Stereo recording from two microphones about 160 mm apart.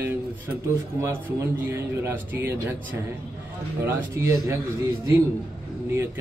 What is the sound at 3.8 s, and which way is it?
Speech, 15° right (ahead or behind).